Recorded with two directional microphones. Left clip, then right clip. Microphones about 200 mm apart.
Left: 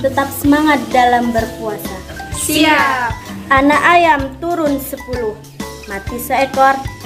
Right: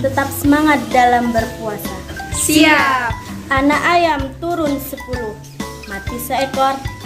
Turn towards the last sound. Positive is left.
turn(degrees=0)  # may be behind; listen again after turning